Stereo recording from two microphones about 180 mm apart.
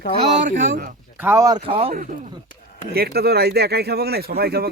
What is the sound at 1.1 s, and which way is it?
Speech, 10° right (ahead or behind).